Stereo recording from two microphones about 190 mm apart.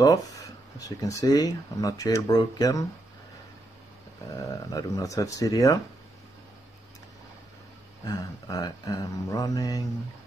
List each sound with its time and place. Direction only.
0.7 s speech: 20° left (ahead or behind)
4.6 s speech: 20° left (ahead or behind)
8.0 s speech: 20° left (ahead or behind)